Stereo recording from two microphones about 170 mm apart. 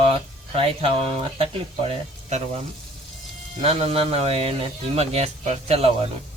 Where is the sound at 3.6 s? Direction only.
35° right (ahead or behind).